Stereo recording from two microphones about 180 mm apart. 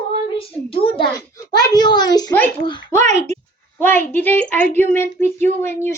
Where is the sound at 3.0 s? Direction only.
40° right (ahead or behind).